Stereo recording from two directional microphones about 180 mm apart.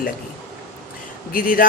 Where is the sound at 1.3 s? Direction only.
50° left (ahead or behind).